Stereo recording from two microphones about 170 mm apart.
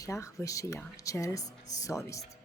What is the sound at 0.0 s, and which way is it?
A woman's voice, 15° left (ahead or behind).